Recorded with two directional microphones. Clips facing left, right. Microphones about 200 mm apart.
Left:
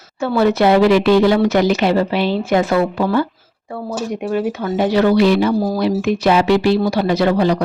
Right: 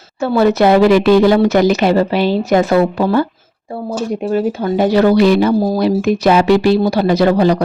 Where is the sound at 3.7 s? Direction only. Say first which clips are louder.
Right 3 dB; 30° right (ahead or behind).